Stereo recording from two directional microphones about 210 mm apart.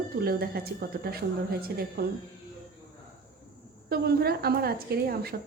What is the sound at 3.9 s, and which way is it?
A woman's voice, 45° right (ahead or behind).